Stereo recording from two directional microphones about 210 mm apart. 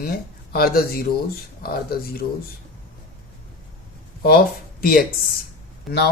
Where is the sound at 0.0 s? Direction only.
45° left (ahead or behind).